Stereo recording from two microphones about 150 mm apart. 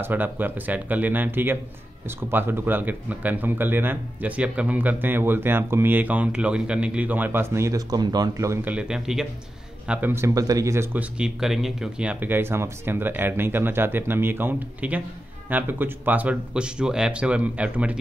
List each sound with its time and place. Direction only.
0.0 s speech: 10° right (ahead or behind)
8.6 s speech: 5° right (ahead or behind)